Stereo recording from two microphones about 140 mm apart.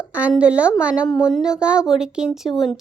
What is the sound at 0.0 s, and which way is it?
A woman's voice, 10° right (ahead or behind).